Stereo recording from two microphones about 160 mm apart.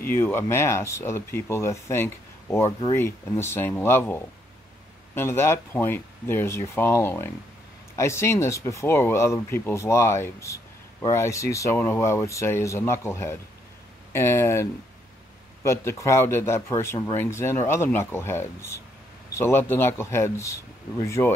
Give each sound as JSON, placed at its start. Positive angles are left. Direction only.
{"t": 0.0, "sound": "speech", "side_deg": 15}